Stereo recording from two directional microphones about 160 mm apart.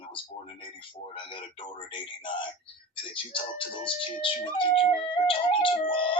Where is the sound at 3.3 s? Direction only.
35° left (ahead or behind).